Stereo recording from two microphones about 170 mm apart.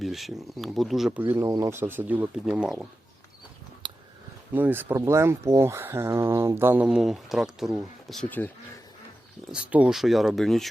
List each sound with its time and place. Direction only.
0.0 s speech: centre (ahead or behind)
3.8 s a sound: 25° right (ahead or behind)
4.5 s speech: 10° right (ahead or behind); by 8.5 s 10° left (ahead or behind)
9.5 s speech: 5° right (ahead or behind)